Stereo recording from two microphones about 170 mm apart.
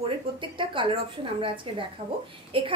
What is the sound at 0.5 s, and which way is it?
A woman's voice, 30° right (ahead or behind).